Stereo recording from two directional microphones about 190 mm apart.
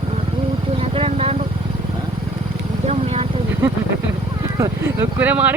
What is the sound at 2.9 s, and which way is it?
Vehicle, 35° right (ahead or behind).